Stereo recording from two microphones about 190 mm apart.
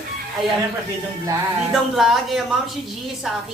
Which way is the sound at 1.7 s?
Centre (ahead or behind).